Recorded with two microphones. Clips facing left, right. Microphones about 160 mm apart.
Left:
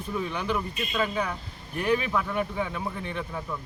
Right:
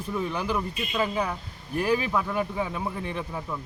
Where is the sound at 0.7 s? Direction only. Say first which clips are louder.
Right 1 dB; 10° right (ahead or behind).